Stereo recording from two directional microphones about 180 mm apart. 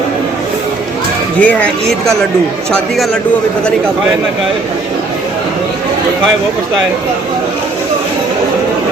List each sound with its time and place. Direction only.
1.4 s speech: 10° left (ahead or behind)